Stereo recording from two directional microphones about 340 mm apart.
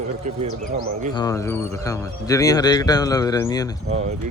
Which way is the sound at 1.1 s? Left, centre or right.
Centre.